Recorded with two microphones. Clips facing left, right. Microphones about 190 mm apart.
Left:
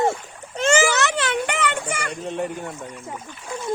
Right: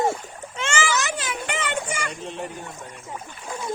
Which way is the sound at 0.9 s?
65° left (ahead or behind).